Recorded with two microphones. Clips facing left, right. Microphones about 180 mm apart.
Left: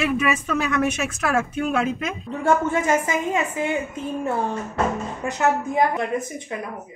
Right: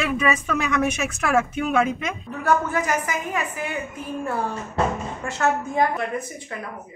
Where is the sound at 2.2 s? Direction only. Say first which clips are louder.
Left 2 dB; 25° left (ahead or behind).